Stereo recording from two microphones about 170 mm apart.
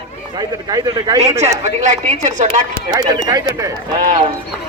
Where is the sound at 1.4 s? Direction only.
40° right (ahead or behind).